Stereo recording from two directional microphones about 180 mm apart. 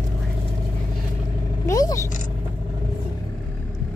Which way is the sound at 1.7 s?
20° left (ahead or behind).